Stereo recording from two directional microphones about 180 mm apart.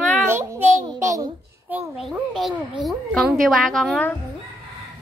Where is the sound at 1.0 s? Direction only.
15° right (ahead or behind).